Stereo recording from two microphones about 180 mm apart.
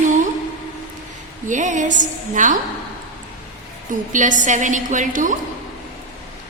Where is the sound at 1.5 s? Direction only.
45° right (ahead or behind).